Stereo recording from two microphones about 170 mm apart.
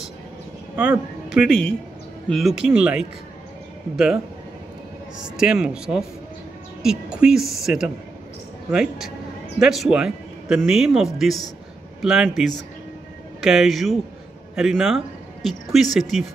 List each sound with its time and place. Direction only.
0.7 s a man's voice: 5° right (ahead or behind)
5.2 s speech: 5° right (ahead or behind)